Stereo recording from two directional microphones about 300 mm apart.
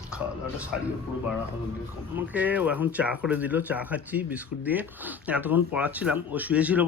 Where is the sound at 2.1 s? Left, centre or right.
Centre.